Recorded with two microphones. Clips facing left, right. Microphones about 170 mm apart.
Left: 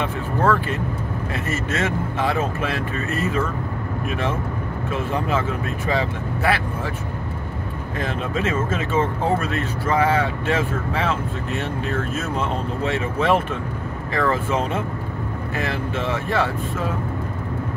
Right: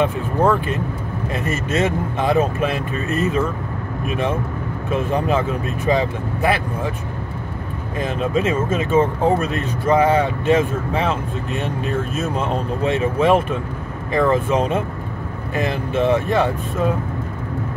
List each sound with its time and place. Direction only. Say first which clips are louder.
0.0 s speech: right 4 dB; 15° right (ahead or behind)
8.0 s speech: right 5 dB; 15° right (ahead or behind)